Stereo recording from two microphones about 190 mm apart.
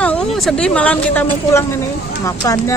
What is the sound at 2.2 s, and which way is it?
Speech, 15° left (ahead or behind).